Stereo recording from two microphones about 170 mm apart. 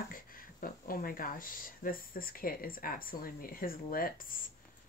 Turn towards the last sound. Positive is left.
turn(degrees=55)  # may be behind; listen again after turning